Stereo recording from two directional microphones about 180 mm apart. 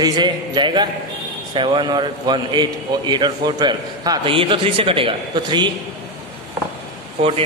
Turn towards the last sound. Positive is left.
turn(degrees=-35)  # may be behind; listen again after turning